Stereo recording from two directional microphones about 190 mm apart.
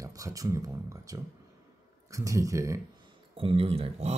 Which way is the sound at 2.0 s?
15° right (ahead or behind).